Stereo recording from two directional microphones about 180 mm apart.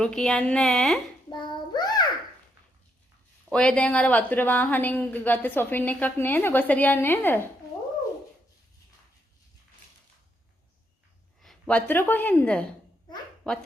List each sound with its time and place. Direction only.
0.0 s speech: 5° left (ahead or behind)
1.3 s child singing: 25° left (ahead or behind)
3.5 s a woman's voice: 5° left (ahead or behind)
11.4 s speech: 5° left (ahead or behind)